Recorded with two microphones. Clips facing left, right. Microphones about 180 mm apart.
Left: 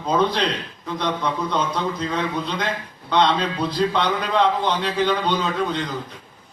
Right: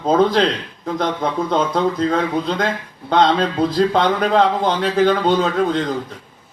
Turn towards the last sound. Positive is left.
turn(degrees=-45)  # may be behind; listen again after turning